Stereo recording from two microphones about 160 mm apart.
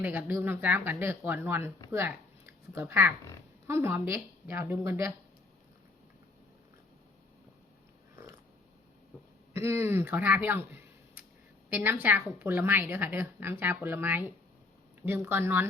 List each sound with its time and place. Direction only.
0.0 s speech: 10° right (ahead or behind)
9.5 s speech: 15° right (ahead or behind)